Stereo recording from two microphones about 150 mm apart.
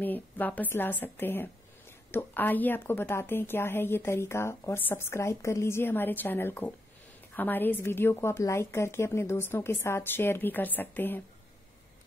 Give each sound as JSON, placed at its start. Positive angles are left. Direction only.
{"t": 0.0, "sound": "a woman's voice", "side_deg": 10}